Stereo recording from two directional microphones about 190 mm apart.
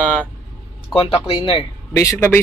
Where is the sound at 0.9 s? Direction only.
25° left (ahead or behind).